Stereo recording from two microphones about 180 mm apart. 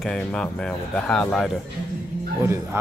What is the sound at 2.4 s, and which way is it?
Speech, 15° right (ahead or behind).